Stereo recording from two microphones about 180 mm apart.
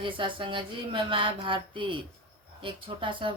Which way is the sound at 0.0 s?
30° right (ahead or behind).